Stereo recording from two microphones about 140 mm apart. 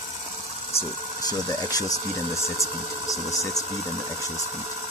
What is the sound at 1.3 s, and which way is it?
Speech, 25° left (ahead or behind).